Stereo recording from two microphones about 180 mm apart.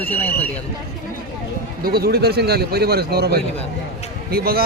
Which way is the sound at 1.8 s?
60° right (ahead or behind).